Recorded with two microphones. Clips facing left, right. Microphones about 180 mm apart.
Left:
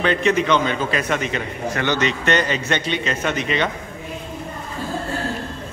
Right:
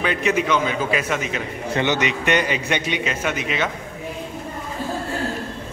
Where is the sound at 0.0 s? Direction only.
10° right (ahead or behind).